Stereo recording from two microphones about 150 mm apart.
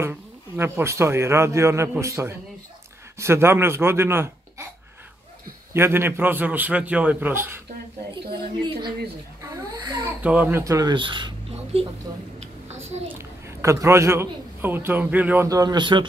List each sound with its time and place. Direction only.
0.0 s a man's voice: 15° right (ahead or behind)
5.7 s a man's voice: 15° right (ahead or behind)
9.5 s a child's voice: 25° right (ahead or behind)
10.2 s a man's voice: 10° right (ahead or behind)
10.6 s speech: 25° right (ahead or behind)
12.4 s a sound: 50° right (ahead or behind)
13.6 s a man's voice: 20° right (ahead or behind)
15.4 s speech: 25° right (ahead or behind)